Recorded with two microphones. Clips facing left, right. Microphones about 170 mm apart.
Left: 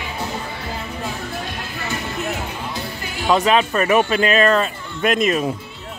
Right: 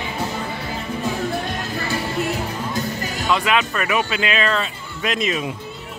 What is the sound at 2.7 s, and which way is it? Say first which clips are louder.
Music: right 4 dB; 45° right (ahead or behind).